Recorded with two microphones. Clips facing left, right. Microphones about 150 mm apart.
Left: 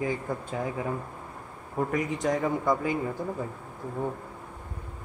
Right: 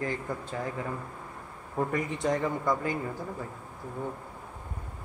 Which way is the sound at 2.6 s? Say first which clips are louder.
Left 3 dB; 10° left (ahead or behind).